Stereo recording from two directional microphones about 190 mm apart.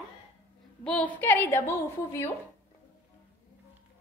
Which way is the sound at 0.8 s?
5° left (ahead or behind).